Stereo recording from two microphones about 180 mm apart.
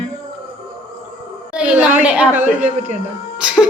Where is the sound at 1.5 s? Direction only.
5° right (ahead or behind).